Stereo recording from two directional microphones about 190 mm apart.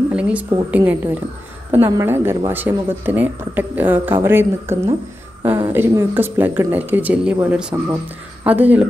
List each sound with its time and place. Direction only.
0.1 s a woman's voice: 5° right (ahead or behind)